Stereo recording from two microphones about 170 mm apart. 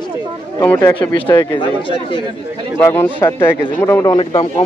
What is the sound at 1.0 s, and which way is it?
Speech, 30° left (ahead or behind).